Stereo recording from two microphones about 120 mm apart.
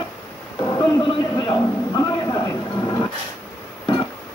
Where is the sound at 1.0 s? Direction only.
40° left (ahead or behind).